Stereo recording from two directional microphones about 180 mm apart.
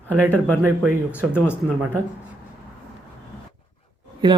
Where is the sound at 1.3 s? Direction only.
10° left (ahead or behind).